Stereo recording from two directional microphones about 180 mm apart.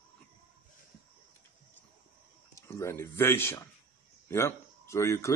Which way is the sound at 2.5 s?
15° left (ahead or behind).